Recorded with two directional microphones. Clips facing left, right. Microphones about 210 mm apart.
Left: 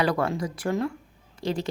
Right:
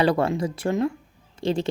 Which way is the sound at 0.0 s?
25° right (ahead or behind).